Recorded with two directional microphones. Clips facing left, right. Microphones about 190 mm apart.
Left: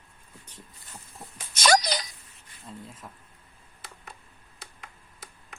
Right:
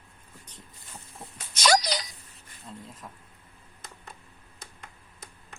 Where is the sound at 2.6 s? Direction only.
5° left (ahead or behind).